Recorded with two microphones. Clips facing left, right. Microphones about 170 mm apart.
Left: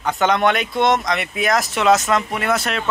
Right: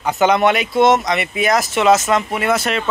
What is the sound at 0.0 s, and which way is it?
Speech, 5° right (ahead or behind).